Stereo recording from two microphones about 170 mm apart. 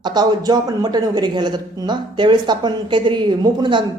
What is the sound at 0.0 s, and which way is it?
A man's voice, 25° right (ahead or behind).